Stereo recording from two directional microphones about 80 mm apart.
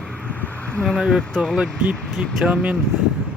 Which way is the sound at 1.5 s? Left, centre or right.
Centre.